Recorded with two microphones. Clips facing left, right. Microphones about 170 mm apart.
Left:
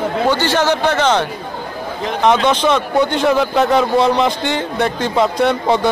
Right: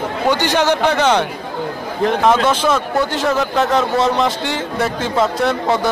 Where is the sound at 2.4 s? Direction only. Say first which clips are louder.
Left 1 dB; 5° right (ahead or behind).